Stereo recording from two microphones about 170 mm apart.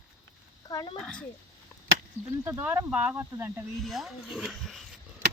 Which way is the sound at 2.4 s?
15° right (ahead or behind).